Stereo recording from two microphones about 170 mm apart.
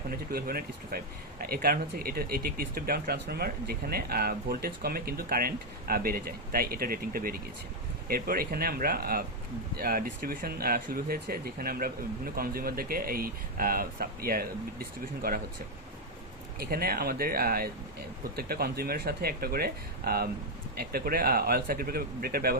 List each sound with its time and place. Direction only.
0.1 s speech: 60° right (ahead or behind)
16.6 s speech: 65° right (ahead or behind)